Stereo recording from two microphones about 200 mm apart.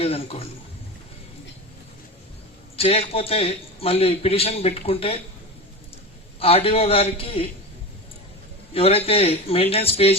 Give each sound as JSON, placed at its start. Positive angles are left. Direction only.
{"t": 0.0, "sound": "a man's voice", "side_deg": 30}
{"t": 2.7, "sound": "a man's voice", "side_deg": 30}
{"t": 6.4, "sound": "a man's voice", "side_deg": 30}
{"t": 8.7, "sound": "a man's voice", "side_deg": 30}